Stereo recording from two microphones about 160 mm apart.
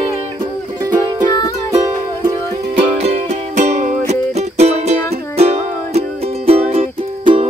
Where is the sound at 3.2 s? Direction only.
50° right (ahead or behind).